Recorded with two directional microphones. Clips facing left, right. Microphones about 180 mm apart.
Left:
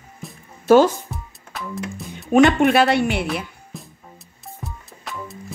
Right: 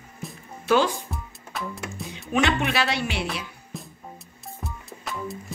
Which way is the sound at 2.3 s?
50° left (ahead or behind).